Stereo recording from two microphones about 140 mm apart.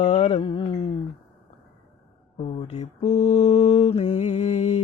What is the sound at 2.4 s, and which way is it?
Mantra, 45° left (ahead or behind).